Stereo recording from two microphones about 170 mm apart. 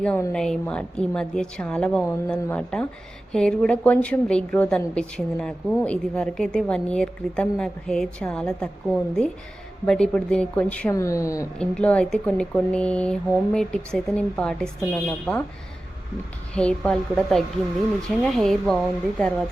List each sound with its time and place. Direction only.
0.0 s a woman's voice: 5° left (ahead or behind)
11.5 s a woman's voice: 5° left (ahead or behind)
16.6 s a woman's voice: 5° left (ahead or behind)